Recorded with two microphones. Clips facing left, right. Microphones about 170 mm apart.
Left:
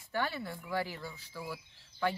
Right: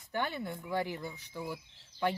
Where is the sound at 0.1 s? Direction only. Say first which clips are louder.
Even; 20° right (ahead or behind).